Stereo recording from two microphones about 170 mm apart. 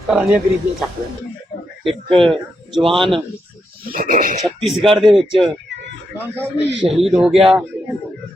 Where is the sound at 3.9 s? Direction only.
55° right (ahead or behind).